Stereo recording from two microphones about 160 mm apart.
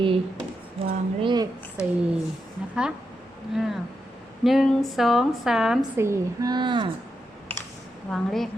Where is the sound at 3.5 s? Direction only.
Centre (ahead or behind).